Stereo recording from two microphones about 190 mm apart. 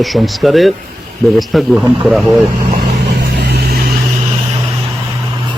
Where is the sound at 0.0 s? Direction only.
Centre (ahead or behind).